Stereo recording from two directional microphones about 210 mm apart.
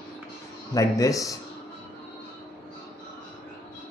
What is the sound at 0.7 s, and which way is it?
Speech, 15° left (ahead or behind).